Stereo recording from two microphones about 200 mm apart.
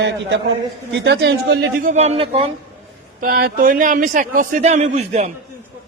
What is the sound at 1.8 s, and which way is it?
Speech, 35° right (ahead or behind).